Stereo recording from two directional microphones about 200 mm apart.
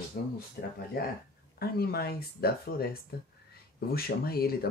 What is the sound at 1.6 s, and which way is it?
Speech, 50° left (ahead or behind).